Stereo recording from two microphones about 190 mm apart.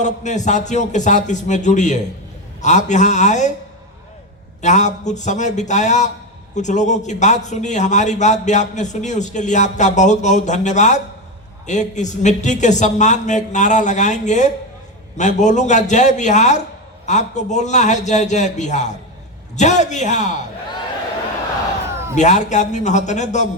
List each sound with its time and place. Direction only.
0.0 s a man's voice: 40° left (ahead or behind)
4.6 s a man's voice: 40° left (ahead or behind)
22.1 s a man's voice: 40° left (ahead or behind)